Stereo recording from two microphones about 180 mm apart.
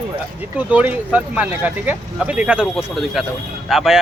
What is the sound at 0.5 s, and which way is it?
Speech, 10° right (ahead or behind).